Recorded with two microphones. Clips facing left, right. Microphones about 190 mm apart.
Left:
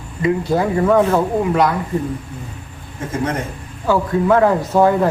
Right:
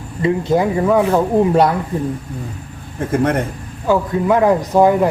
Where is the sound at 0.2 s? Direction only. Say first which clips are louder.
Right 2 dB; 25° right (ahead or behind).